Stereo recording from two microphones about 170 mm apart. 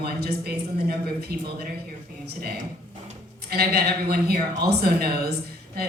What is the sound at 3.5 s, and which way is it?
Speech, 65° right (ahead or behind).